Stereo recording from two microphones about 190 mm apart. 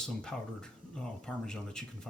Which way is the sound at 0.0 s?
5° left (ahead or behind).